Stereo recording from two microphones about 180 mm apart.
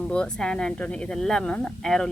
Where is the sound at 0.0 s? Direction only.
5° left (ahead or behind).